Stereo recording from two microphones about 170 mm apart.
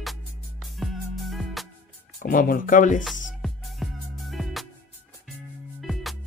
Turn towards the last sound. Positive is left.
turn(degrees=0)  # may be behind; listen again after turning